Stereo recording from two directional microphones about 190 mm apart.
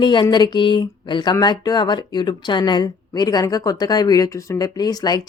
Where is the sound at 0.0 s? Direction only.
25° left (ahead or behind).